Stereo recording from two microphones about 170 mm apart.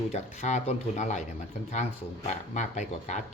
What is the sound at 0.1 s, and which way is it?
Speech, 40° left (ahead or behind).